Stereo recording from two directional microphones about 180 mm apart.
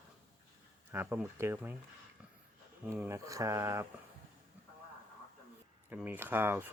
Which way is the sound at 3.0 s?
15° right (ahead or behind).